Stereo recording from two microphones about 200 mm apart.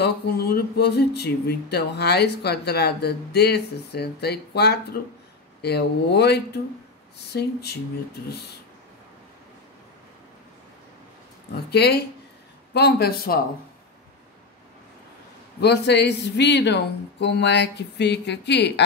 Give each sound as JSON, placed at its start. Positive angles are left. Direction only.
{"t": 0.0, "sound": "speech", "side_deg": 50}
{"t": 11.7, "sound": "speech", "side_deg": 55}
{"t": 15.6, "sound": "speech", "side_deg": 55}